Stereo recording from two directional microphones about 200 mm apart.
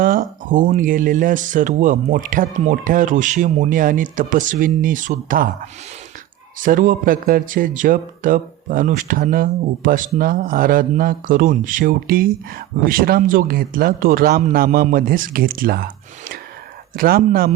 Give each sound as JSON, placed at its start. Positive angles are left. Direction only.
{"t": 0.0, "sound": "speech", "side_deg": -40}
{"t": 6.6, "sound": "a man's voice", "side_deg": -40}
{"t": 16.9, "sound": "a man's voice", "side_deg": -45}